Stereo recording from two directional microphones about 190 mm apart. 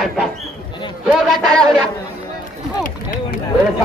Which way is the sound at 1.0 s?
Centre (ahead or behind).